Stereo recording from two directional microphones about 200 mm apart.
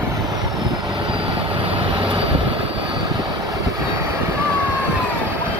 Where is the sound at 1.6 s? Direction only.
30° right (ahead or behind).